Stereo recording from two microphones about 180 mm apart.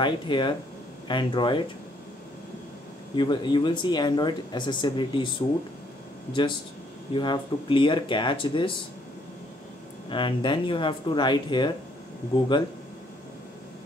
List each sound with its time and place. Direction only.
0.0 s speech: 25° left (ahead or behind)
3.2 s speech: 25° left (ahead or behind)
7.2 s speech: 25° left (ahead or behind)
10.0 s speech: 25° left (ahead or behind)